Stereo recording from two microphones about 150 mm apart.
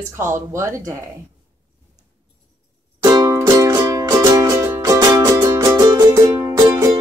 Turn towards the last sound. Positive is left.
turn(degrees=-25)  # may be behind; listen again after turning